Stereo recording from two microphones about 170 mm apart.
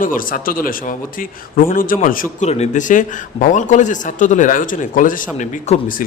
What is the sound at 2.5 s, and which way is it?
A man's voice, 40° left (ahead or behind).